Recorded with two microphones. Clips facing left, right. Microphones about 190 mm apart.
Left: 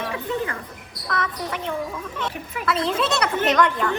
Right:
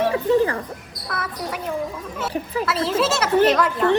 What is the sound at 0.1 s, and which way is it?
Music, 35° right (ahead or behind).